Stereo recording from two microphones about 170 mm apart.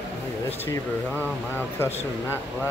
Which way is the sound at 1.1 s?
10° right (ahead or behind).